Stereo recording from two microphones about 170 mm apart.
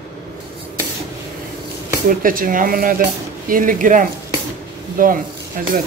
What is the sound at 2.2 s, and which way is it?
Speech, 55° right (ahead or behind).